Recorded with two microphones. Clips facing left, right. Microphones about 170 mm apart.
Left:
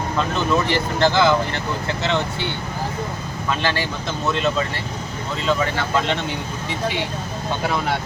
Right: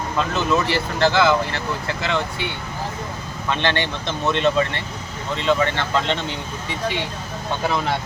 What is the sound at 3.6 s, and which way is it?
Speech, 5° left (ahead or behind).